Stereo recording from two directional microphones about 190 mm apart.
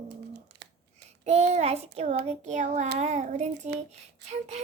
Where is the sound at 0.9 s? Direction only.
35° right (ahead or behind).